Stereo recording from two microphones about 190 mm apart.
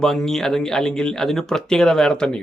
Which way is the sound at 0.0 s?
Centre (ahead or behind).